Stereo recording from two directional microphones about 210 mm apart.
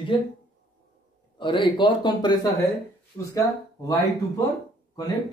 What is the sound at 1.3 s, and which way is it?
Speech, 25° left (ahead or behind).